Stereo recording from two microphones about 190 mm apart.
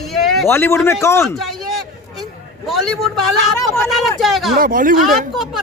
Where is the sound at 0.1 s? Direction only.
Centre (ahead or behind).